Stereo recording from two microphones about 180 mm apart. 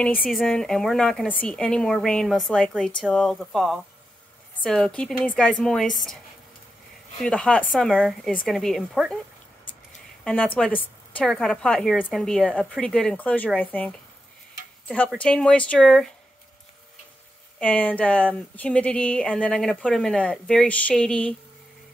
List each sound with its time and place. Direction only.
0.0 s a woman's voice: 5° left (ahead or behind)
7.2 s a woman's voice: 5° left (ahead or behind)
10.2 s a woman's voice: 5° left (ahead or behind)
15.1 s a woman's voice: 5° left (ahead or behind)
17.6 s speech: 10° left (ahead or behind)